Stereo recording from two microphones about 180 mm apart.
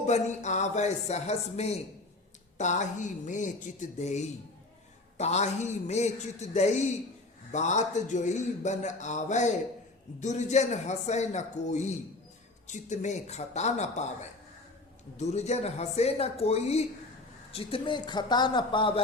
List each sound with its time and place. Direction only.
0.0 s a man's voice: 40° left (ahead or behind)
15.2 s a man's voice: 40° left (ahead or behind)